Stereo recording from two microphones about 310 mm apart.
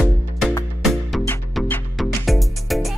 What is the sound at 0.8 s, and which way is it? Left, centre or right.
Music, centre.